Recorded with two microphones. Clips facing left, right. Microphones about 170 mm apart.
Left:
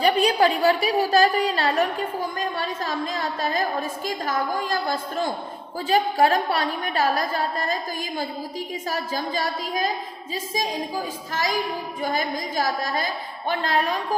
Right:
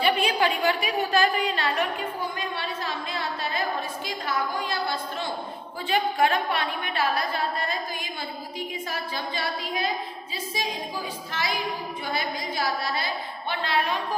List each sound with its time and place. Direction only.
0.0 s a woman's voice: 40° left (ahead or behind)